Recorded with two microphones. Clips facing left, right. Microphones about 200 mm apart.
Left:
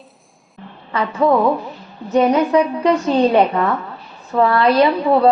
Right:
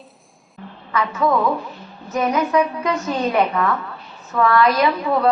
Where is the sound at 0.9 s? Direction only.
30° left (ahead or behind).